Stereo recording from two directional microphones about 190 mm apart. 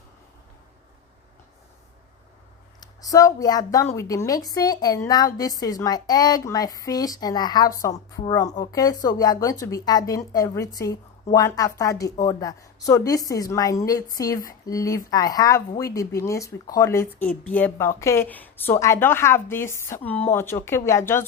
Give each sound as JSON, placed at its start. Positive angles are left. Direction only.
{"t": 2.8, "sound": "a woman's voice", "side_deg": 20}